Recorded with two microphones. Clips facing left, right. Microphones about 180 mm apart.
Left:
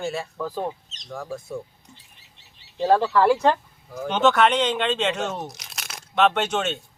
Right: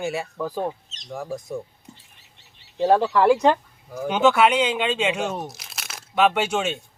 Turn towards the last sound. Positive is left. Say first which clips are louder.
# right 1 dB
turn(degrees=-10)  # may be behind; listen again after turning